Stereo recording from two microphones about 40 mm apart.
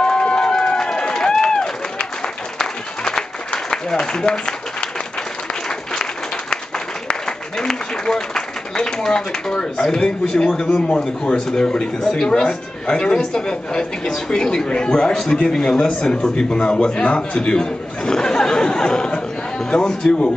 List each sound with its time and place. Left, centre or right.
0.0 s run: left
3.0 s a sound: centre
3.9 s speech: centre
7.1 s a man's voice: centre